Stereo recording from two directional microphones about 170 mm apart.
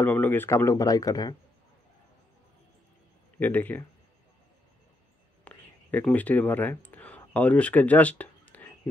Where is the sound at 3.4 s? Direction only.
10° left (ahead or behind).